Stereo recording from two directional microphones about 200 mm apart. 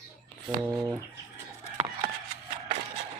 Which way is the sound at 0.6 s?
10° right (ahead or behind).